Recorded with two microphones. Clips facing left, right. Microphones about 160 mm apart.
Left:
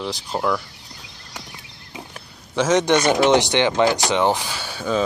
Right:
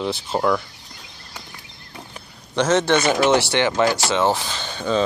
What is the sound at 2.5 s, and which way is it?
Speech, 10° left (ahead or behind).